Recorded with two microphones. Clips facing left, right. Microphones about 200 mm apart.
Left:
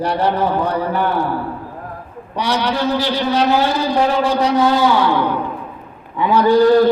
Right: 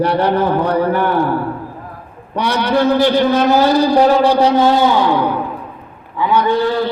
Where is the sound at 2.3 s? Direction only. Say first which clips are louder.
Right 4 dB; 55° right (ahead or behind); by 4.9 s 25° right (ahead or behind).